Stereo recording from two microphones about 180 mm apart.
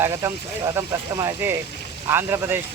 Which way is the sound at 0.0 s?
15° right (ahead or behind).